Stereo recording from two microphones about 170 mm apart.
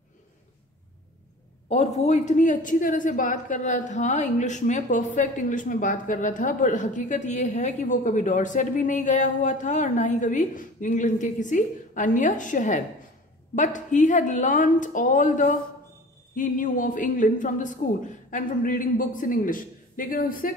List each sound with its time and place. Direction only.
1.7 s speech: 40° left (ahead or behind)